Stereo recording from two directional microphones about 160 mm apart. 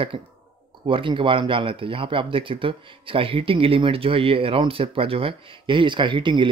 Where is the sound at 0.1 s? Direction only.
30° right (ahead or behind).